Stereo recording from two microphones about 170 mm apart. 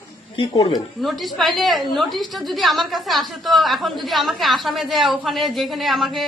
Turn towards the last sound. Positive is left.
turn(degrees=0)  # may be behind; listen again after turning